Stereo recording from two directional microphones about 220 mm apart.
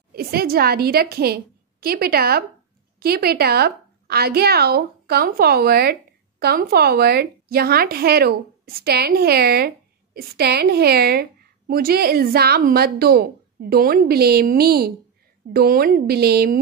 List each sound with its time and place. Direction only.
0.1 s a woman's voice: 45° right (ahead or behind)